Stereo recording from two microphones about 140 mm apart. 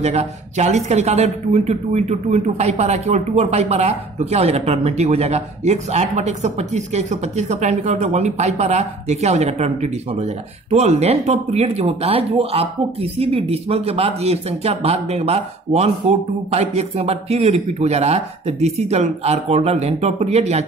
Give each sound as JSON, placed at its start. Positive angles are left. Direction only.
{"t": 0.0, "sound": "speech", "side_deg": -50}